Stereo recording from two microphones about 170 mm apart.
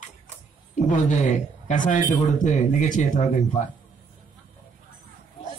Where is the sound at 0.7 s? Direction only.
45° left (ahead or behind).